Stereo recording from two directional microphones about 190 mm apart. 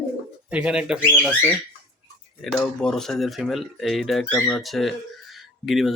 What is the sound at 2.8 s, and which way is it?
Speech, centre (ahead or behind).